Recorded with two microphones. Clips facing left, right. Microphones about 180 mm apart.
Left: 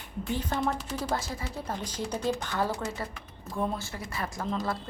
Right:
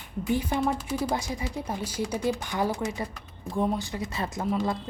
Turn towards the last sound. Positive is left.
turn(degrees=-20)  # may be behind; listen again after turning